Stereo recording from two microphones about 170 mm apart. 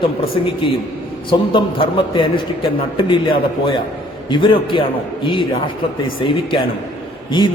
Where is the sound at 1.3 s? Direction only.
30° left (ahead or behind).